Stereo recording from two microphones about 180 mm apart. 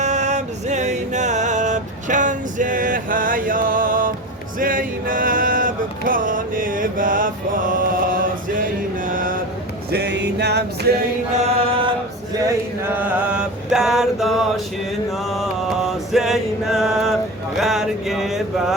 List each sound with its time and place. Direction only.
0.0 s music: 40° right (ahead or behind)
9.0 s mantra: 50° right (ahead or behind)
9.9 s music: 70° right (ahead or behind)
11.3 s chant: 35° right (ahead or behind)
13.0 s mantra: 5° right (ahead or behind)
15.1 s music: centre (ahead or behind)